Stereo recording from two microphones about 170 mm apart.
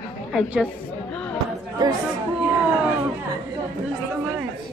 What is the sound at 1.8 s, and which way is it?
Speech, 25° right (ahead or behind).